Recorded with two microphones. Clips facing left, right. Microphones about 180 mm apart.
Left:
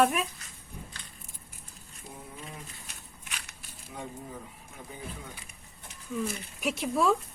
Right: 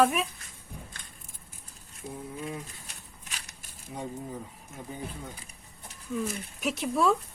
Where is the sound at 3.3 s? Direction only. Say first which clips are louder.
Left 1 dB; 40° right (ahead or behind).